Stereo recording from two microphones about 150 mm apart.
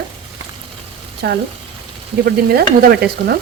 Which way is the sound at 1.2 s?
90° right.